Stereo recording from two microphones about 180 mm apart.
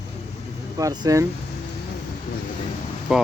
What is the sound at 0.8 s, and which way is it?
Speech, 20° right (ahead or behind).